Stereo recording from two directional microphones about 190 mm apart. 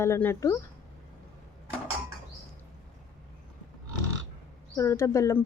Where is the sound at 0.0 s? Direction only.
10° left (ahead or behind).